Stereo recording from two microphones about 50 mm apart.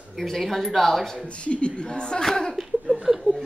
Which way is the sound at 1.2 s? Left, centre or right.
Left.